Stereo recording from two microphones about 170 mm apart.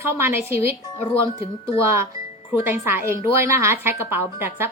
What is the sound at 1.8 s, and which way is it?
A woman's voice, 15° right (ahead or behind).